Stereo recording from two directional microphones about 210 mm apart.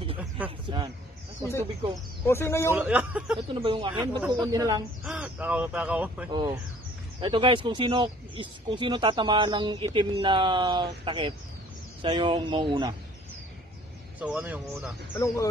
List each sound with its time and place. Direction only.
0.7 s a man's voice: 20° right (ahead or behind)
1.4 s speech: 10° left (ahead or behind)
2.7 s speech: 5° right (ahead or behind)
3.3 s speech: 25° right (ahead or behind)
5.0 s speech: 5° right (ahead or behind)
6.3 s speech: 20° right (ahead or behind)
14.2 s speech: 5° right (ahead or behind)